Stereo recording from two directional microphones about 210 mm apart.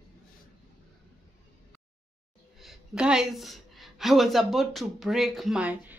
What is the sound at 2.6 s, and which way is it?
A woman's voice, centre (ahead or behind).